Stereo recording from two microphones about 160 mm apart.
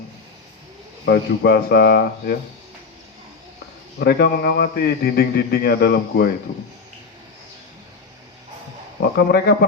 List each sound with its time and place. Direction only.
1.0 s speech: 90° left
4.0 s a man's voice: 80° left
9.0 s a man's voice: 90° left